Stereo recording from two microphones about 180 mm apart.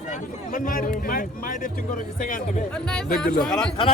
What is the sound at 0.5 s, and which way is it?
Speech, 45° left (ahead or behind).